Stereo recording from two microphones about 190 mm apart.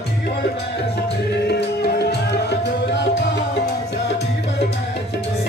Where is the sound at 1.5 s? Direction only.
60° left (ahead or behind).